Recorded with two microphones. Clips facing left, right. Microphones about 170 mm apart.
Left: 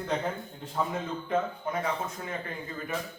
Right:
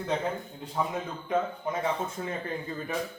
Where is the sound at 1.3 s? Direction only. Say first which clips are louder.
Right 2 dB; 15° right (ahead or behind).